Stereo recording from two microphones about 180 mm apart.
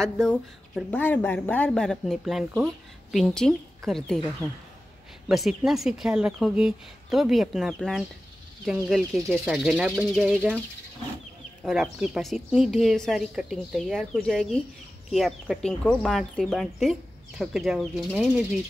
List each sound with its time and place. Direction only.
0.0 s a woman's voice: 5° left (ahead or behind)
11.6 s a woman's voice: centre (ahead or behind)